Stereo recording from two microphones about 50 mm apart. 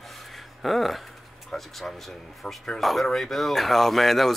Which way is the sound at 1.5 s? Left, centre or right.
Centre.